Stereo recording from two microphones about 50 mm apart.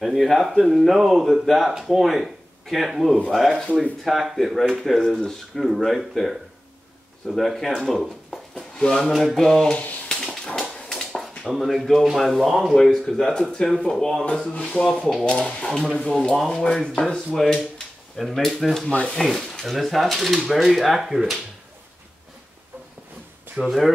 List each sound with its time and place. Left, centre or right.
0.0 s speech: centre
8.5 s drawer open or close: centre
9.4 s speech: centre
10.0 s dog: centre
11.5 s speech: centre
14.6 s rub: centre
14.9 s speech: centre
15.2 s speech: centre
18.9 s rub: left
19.1 s speech: centre
23.6 s speech: centre